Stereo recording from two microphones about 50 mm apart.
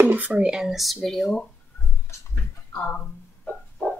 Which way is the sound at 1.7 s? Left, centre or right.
Left.